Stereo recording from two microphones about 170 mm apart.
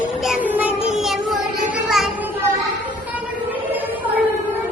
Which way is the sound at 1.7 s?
Centre (ahead or behind).